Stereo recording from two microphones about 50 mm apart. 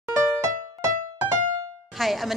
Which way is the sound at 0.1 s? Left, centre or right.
Right.